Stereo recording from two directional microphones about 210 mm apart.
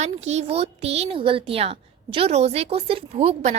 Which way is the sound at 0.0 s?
30° right (ahead or behind).